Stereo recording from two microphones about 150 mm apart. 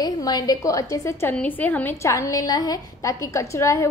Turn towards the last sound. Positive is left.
turn(degrees=20)  # may be behind; listen again after turning